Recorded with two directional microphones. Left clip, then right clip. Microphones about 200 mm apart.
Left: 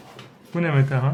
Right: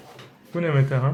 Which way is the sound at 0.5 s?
Centre (ahead or behind).